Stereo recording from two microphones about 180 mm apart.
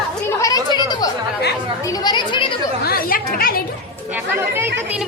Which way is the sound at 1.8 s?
20° left (ahead or behind).